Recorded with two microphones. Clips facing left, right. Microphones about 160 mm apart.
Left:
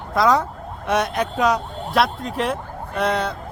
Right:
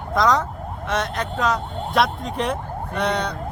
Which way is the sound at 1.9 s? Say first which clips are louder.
Left 1 dB; centre (ahead or behind).